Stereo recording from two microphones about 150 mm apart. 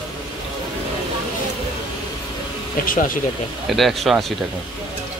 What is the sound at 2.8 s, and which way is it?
Speech, 65° left (ahead or behind).